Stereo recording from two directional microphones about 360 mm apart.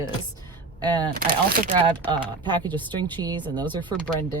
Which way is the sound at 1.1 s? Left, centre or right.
Right.